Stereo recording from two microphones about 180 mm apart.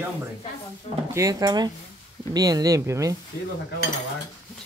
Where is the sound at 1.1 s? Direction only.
20° right (ahead or behind).